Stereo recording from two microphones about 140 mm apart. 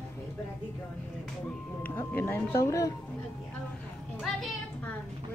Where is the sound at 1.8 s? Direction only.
15° left (ahead or behind).